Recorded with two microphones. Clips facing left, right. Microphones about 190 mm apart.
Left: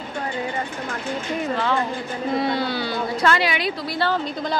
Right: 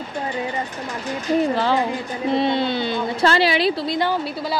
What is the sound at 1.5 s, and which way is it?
Speech, 35° right (ahead or behind).